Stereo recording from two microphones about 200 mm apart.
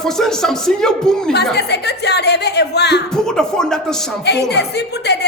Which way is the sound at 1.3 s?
55° left (ahead or behind).